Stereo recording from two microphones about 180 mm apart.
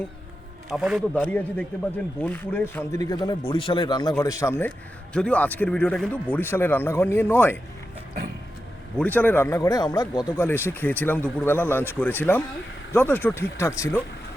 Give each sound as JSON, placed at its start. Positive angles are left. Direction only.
{"t": 0.7, "sound": "a man's voice", "side_deg": 0}
{"t": 9.0, "sound": "a man's voice", "side_deg": 10}